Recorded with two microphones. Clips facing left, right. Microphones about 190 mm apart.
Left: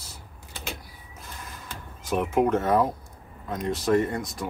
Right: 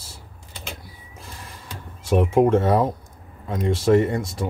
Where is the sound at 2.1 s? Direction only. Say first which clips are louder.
Right 6 dB; 30° right (ahead or behind).